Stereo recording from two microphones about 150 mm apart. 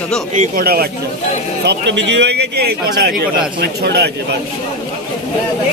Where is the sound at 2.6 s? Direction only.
85° right.